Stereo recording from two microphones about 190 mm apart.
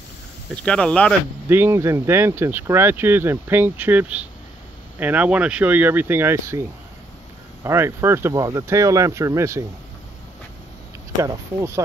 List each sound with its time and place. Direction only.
0.7 s speech: 5° left (ahead or behind)
1.5 s speech: 10° right (ahead or behind)
7.6 s speech: 15° right (ahead or behind)
11.1 s speech: 15° right (ahead or behind)